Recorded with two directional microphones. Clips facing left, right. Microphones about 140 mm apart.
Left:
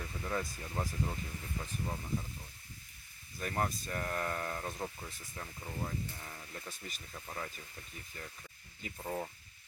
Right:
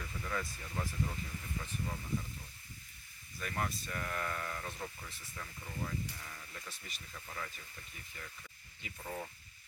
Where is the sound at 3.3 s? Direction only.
40° left (ahead or behind).